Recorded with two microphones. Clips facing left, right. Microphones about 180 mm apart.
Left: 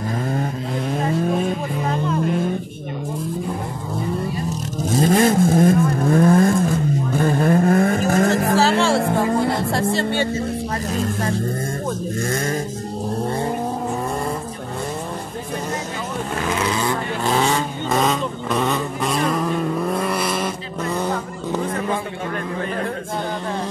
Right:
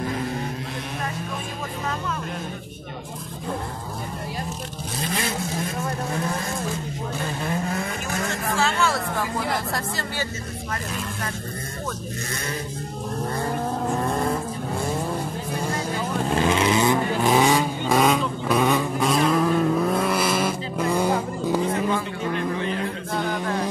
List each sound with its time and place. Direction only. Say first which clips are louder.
4.9 s vehicle: left 13 dB; 45° left (ahead or behind); by 10.2 s 25° left (ahead or behind)
16.3 s vehicle: right 3 dB; 25° right (ahead or behind); by 21.7 s 10° right (ahead or behind)